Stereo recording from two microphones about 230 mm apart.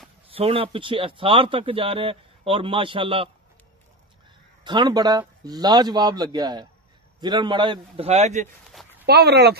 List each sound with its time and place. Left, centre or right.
0.3 s speech: right
4.6 s a man's voice: centre
9.0 s speech: right